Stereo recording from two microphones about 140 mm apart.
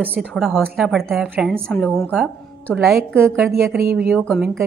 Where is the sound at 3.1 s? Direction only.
15° right (ahead or behind).